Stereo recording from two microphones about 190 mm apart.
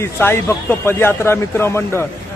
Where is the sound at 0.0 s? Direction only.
10° left (ahead or behind).